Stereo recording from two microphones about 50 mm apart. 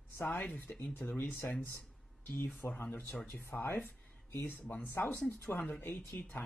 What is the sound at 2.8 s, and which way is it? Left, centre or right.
Speech, left.